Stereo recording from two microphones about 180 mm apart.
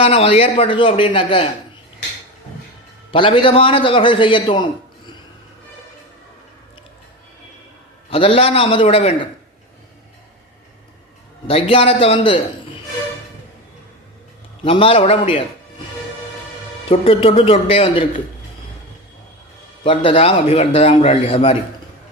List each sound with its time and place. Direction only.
0.0 s a man's voice: 30° left (ahead or behind)
3.1 s a man's voice: 30° left (ahead or behind)
8.1 s a man's voice: 30° left (ahead or behind)
11.4 s a man's voice: 30° left (ahead or behind)
14.6 s a man's voice: 30° left (ahead or behind)
16.9 s a man's voice: 30° left (ahead or behind)
19.8 s a man's voice: 30° left (ahead or behind)